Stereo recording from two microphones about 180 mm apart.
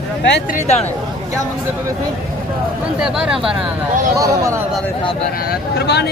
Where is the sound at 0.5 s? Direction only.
35° left (ahead or behind).